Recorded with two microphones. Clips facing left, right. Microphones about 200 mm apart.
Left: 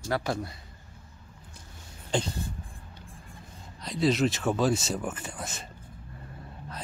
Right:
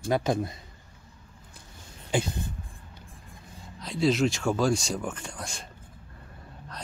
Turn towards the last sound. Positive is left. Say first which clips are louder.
# left 1 dB
turn(degrees=5)  # may be behind; listen again after turning